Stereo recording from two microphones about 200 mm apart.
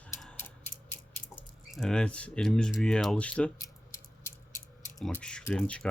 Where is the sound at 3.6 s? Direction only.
15° left (ahead or behind).